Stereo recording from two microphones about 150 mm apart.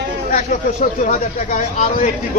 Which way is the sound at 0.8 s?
55° left (ahead or behind).